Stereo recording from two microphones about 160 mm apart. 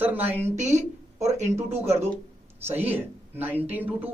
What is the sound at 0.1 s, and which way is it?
Speech, 10° right (ahead or behind).